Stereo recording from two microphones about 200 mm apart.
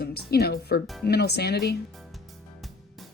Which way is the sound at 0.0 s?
50° left (ahead or behind).